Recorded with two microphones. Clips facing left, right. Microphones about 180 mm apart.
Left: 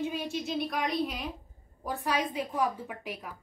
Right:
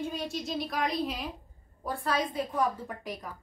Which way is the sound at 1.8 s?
10° left (ahead or behind).